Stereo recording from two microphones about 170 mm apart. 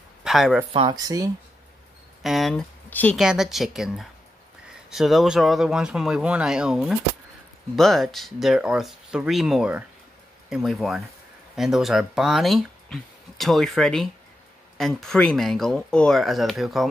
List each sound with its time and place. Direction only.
0.2 s speech: centre (ahead or behind)
0.7 s speech: 25° right (ahead or behind)
2.2 s speech: centre (ahead or behind)
3.2 s speech: 5° right (ahead or behind)